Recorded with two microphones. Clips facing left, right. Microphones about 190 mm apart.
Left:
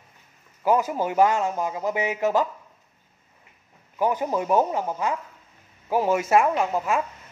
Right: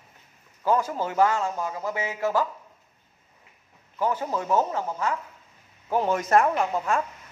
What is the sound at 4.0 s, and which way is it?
Speech, 15° left (ahead or behind).